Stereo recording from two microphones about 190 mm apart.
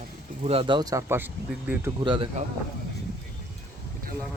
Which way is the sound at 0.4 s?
30° right (ahead or behind).